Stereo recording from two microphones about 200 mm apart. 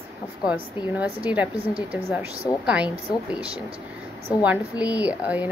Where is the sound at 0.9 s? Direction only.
5° right (ahead or behind).